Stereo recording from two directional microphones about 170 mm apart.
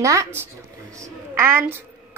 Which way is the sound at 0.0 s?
20° right (ahead or behind).